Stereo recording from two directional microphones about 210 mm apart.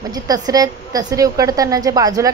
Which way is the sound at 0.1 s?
15° right (ahead or behind).